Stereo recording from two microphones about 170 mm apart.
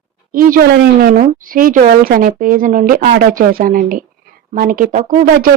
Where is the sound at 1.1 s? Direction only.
45° right (ahead or behind).